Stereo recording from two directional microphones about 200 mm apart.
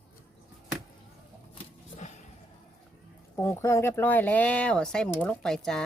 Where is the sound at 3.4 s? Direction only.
15° left (ahead or behind).